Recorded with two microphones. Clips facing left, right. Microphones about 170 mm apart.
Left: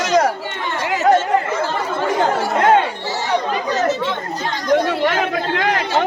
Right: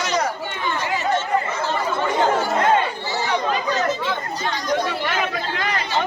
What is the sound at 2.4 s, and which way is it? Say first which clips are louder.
Chatter: left 4 dB; 75° left (ahead or behind).